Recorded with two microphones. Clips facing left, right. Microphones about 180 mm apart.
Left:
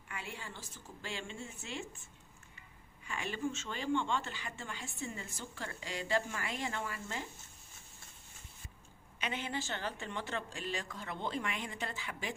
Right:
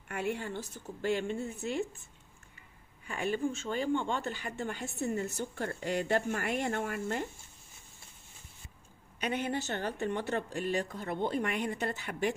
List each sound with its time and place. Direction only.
0.1 s a woman's voice: 65° right (ahead or behind)
3.1 s a woman's voice: 40° right (ahead or behind); by 7.2 s 55° right (ahead or behind)
9.2 s a woman's voice: 55° right (ahead or behind)